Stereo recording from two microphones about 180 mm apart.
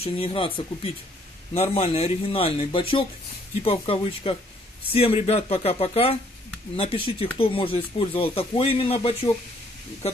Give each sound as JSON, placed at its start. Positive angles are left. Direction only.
{"t": 0.0, "sound": "speech", "side_deg": 30}
{"t": 1.5, "sound": "speech", "side_deg": 35}